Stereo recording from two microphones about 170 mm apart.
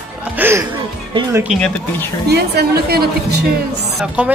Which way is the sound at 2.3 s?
70° right (ahead or behind).